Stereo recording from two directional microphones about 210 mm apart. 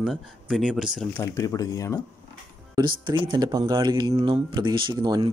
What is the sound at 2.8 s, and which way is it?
Speech, 20° right (ahead or behind).